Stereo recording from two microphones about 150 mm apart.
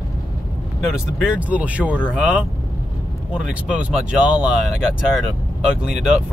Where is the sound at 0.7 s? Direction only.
5° right (ahead or behind).